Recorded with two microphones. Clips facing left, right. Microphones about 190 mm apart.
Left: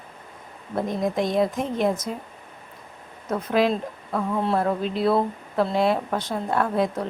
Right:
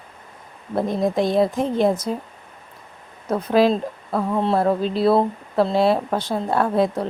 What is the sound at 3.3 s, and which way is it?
A woman's voice, 30° right (ahead or behind).